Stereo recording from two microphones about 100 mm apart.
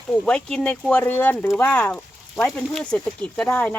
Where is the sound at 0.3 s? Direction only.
10° left (ahead or behind).